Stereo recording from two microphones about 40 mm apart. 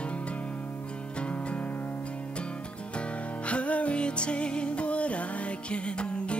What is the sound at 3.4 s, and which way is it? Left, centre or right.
Music, left.